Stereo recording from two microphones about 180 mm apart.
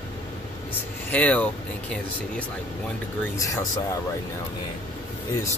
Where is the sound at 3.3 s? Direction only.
20° left (ahead or behind).